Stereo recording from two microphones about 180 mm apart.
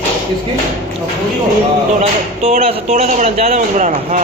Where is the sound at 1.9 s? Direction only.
40° right (ahead or behind).